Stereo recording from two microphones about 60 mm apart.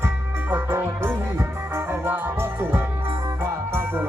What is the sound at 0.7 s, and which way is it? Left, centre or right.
Music, right.